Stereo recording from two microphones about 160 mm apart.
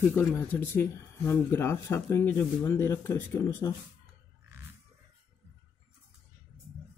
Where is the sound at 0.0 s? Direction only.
10° left (ahead or behind).